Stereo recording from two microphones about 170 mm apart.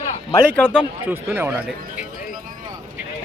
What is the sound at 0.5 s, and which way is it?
Speech, 10° left (ahead or behind).